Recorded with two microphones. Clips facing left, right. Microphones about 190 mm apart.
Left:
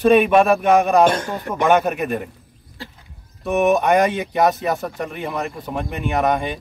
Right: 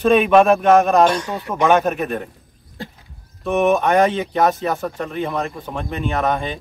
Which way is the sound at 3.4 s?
10° left (ahead or behind).